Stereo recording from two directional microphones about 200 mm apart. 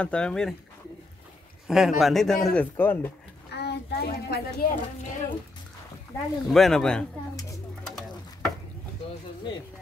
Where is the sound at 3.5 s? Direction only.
55° left (ahead or behind).